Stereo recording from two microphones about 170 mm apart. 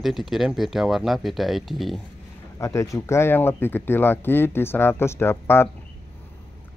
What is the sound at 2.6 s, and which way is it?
Speech, 20° left (ahead or behind).